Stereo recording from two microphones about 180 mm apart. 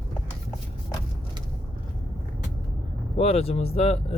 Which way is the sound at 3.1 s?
35° left (ahead or behind).